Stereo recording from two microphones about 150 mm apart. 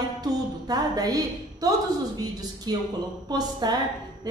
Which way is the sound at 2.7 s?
30° right (ahead or behind).